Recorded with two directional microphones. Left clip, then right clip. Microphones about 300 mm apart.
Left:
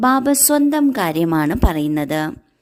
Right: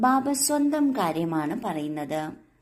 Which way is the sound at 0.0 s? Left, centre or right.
Left.